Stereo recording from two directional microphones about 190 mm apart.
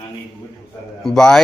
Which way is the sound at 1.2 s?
5° left (ahead or behind).